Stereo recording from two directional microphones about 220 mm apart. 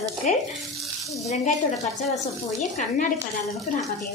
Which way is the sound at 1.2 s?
30° left (ahead or behind).